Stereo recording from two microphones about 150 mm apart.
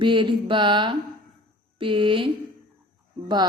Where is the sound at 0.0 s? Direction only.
35° right (ahead or behind).